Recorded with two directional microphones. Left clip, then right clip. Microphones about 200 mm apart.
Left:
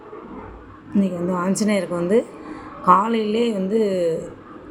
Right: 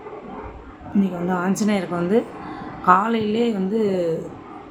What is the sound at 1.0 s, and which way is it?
A woman's voice, 5° left (ahead or behind).